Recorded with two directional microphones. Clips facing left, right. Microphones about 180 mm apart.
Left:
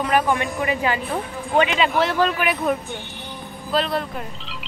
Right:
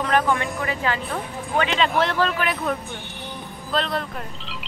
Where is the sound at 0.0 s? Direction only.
15° left (ahead or behind).